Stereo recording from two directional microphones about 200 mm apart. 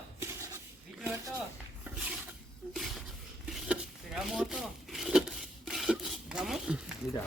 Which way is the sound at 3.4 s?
Centre (ahead or behind).